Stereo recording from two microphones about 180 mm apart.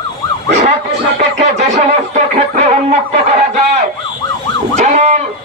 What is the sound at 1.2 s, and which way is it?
Speech, 40° right (ahead or behind).